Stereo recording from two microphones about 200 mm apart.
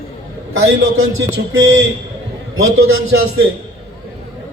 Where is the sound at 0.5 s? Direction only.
90° right.